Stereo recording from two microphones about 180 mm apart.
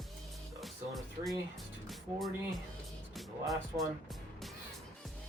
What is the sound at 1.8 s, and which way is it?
Speech, centre (ahead or behind).